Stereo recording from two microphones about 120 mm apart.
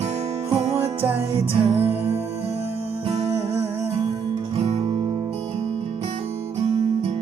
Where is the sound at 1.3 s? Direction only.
55° right (ahead or behind).